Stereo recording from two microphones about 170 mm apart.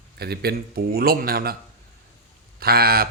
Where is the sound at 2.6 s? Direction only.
65° right (ahead or behind).